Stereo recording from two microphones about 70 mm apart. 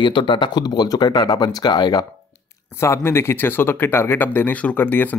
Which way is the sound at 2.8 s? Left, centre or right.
Left.